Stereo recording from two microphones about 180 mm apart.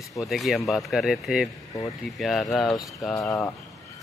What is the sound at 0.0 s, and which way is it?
Speech, 20° left (ahead or behind).